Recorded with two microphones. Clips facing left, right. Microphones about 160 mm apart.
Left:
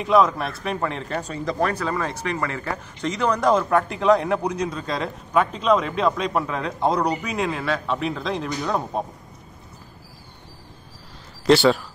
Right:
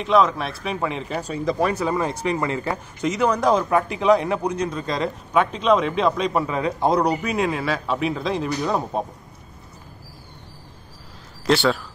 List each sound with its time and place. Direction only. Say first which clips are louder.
0.0 s a man's voice: even; centre (ahead or behind); by 2.7 s 20° right (ahead or behind)
3.0 s a man's voice: right 2 dB; 5° right (ahead or behind)
11.4 s a man's voice: left 3 dB; centre (ahead or behind)